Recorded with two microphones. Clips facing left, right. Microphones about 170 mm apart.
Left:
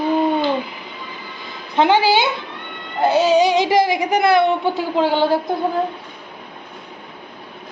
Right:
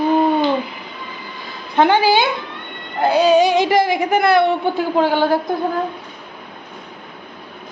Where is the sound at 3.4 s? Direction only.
20° left (ahead or behind).